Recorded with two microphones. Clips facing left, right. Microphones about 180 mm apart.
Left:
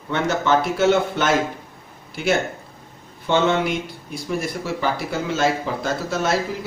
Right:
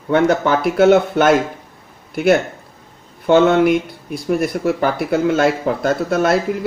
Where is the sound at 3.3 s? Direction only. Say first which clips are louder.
Right 8 dB; 55° right (ahead or behind).